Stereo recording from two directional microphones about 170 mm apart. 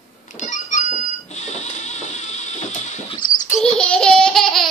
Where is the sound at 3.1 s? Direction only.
25° left (ahead or behind).